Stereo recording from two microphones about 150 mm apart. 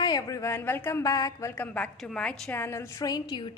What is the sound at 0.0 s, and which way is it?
A woman's voice, 25° left (ahead or behind).